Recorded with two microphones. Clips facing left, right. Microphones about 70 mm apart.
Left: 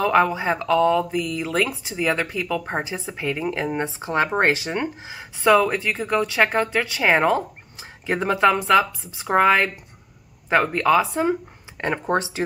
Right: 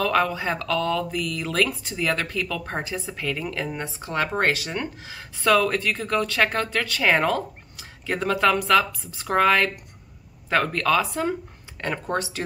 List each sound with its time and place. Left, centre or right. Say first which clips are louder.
0.0 s speech: left 4 dB; left